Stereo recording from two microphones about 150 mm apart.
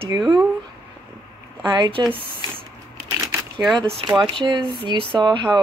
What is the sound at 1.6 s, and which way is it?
Speech, 30° right (ahead or behind).